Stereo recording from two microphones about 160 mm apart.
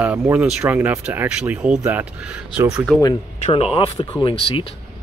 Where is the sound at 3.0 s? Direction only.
30° left (ahead or behind).